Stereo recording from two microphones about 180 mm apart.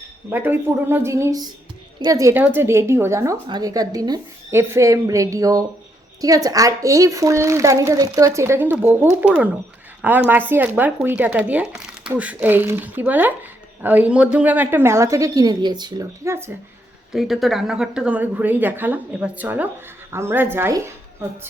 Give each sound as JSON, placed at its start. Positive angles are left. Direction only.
{"t": 0.3, "sound": "a woman's voice", "side_deg": -10}
{"t": 17.1, "sound": "a woman's voice", "side_deg": 0}